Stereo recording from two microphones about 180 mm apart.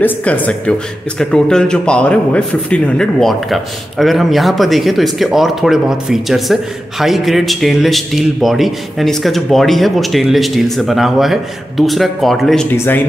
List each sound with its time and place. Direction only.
0.0 s a man's voice: 10° left (ahead or behind)